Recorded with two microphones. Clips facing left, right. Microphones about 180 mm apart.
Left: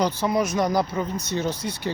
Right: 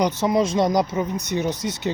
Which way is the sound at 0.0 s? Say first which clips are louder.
Right 3 dB; 20° right (ahead or behind).